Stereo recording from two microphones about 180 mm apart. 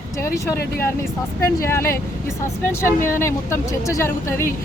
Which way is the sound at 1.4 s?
15° left (ahead or behind).